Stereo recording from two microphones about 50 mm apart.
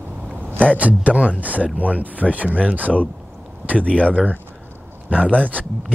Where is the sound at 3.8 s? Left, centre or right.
Left.